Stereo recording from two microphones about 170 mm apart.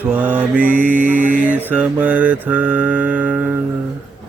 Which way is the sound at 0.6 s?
50° right (ahead or behind).